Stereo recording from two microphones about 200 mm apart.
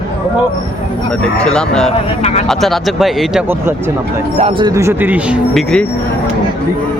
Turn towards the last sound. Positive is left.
turn(degrees=5)  # may be behind; listen again after turning